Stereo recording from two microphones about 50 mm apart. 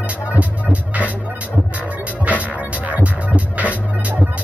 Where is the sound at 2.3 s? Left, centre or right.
Right.